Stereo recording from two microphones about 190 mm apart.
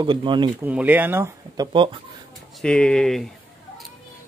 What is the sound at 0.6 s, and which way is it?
Speech, 10° right (ahead or behind).